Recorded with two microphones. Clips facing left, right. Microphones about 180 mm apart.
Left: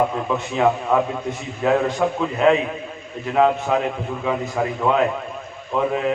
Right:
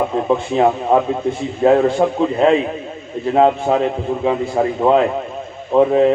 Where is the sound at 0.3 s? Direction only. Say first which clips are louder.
Right 4 dB; 30° right (ahead or behind).